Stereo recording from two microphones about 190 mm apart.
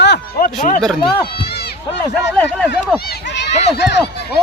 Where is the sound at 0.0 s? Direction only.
55° left (ahead or behind).